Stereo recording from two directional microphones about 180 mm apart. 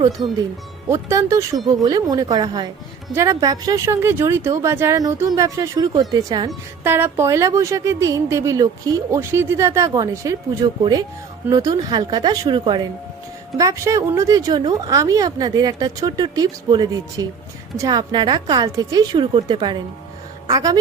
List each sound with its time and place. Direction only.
0.9 s a woman's voice: 15° right (ahead or behind)